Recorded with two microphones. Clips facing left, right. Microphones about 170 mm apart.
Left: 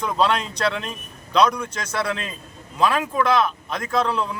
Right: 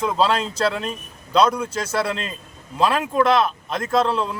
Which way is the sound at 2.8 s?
30° right (ahead or behind).